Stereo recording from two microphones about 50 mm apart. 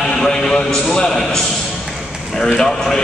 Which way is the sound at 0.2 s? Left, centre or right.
Centre.